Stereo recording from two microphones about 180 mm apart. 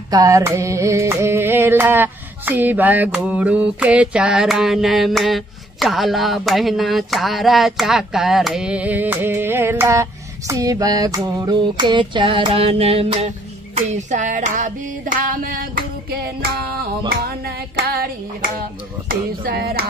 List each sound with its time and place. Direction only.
0.1 s mantra: 20° right (ahead or behind); by 13.3 s 35° right (ahead or behind)
13.7 s female singing: 40° right (ahead or behind); by 16.8 s 60° right (ahead or behind)
17.2 s hands: 60° right (ahead or behind)
19.0 s a sound: 60° right (ahead or behind)